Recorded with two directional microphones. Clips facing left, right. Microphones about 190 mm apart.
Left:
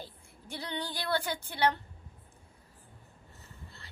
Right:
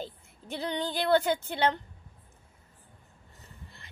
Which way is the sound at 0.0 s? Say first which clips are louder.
Right 7 dB; 20° right (ahead or behind).